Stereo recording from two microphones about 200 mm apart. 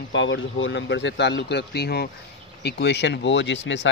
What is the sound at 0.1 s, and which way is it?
Speech, 70° left (ahead or behind).